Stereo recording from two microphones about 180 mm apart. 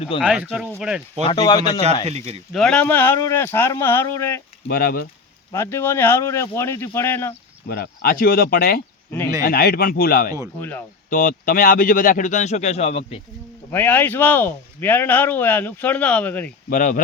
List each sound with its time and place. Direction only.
0.2 s speech: 5° right (ahead or behind)
1.3 s a man's voice: 25° left (ahead or behind)
2.0 s speech: 35° right (ahead or behind)
2.5 s speech: 5° left (ahead or behind)
4.7 s speech: 55° left (ahead or behind)
5.5 s speech: 15° left (ahead or behind)
7.7 s speech: 55° left (ahead or behind)
10.6 s speech: 10° left (ahead or behind)
11.1 s a man's voice: 50° left (ahead or behind); by 13.1 s 35° left (ahead or behind)
13.7 s speech: 10° left (ahead or behind)
16.6 s a man's voice: 50° left (ahead or behind)